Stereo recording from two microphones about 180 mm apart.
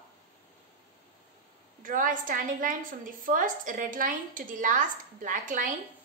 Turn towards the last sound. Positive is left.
turn(degrees=-45)  # may be behind; listen again after turning